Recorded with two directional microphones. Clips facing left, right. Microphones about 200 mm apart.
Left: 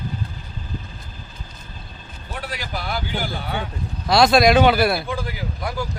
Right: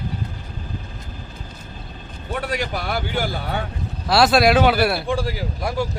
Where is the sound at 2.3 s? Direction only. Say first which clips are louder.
Right 6 dB; 50° right (ahead or behind).